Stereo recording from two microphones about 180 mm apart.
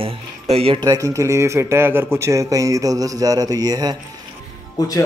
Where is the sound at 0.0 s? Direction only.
30° right (ahead or behind).